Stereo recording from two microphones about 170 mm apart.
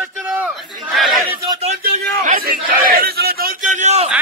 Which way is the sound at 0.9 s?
Centre (ahead or behind).